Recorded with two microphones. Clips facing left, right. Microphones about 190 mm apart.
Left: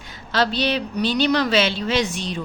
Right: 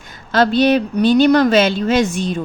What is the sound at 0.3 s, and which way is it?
A woman's voice, 50° right (ahead or behind).